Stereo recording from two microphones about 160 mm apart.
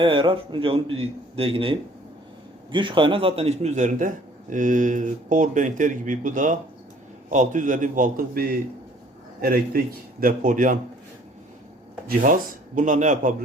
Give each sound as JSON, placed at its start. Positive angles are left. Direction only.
{"t": 0.0, "sound": "a man's voice", "side_deg": -35}
{"t": 12.0, "sound": "a man's voice", "side_deg": -55}